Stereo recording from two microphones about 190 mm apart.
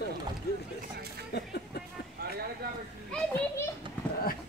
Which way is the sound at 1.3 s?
60° left (ahead or behind).